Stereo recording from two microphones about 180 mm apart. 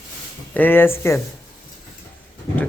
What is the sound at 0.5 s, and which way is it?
Speech, 10° left (ahead or behind).